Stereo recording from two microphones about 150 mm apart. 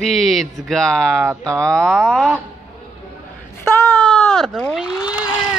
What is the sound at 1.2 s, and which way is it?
Speech, 20° right (ahead or behind).